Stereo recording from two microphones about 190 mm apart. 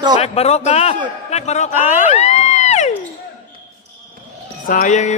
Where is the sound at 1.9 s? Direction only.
35° left (ahead or behind).